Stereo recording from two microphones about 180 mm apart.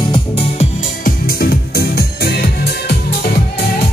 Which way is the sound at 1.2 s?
60° left (ahead or behind).